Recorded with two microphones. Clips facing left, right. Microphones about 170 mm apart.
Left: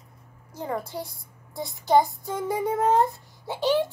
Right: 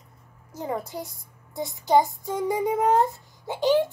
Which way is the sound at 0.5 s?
10° right (ahead or behind).